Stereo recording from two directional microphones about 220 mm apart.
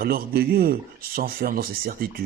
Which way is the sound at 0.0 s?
45° right (ahead or behind).